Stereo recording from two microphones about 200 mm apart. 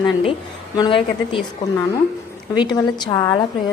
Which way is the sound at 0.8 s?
25° left (ahead or behind).